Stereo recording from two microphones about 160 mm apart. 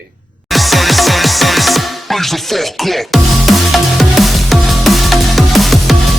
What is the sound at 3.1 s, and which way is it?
Music, centre (ahead or behind).